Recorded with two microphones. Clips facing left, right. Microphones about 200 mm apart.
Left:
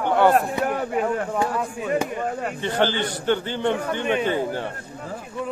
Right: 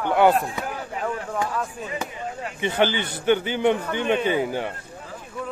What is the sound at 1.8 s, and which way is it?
Speech, 55° left (ahead or behind).